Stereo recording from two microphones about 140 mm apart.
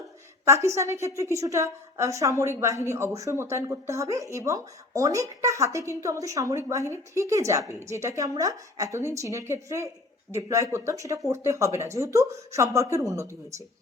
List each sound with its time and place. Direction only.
0.4 s speech: 20° right (ahead or behind)